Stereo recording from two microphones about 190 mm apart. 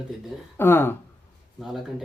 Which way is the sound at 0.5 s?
10° left (ahead or behind).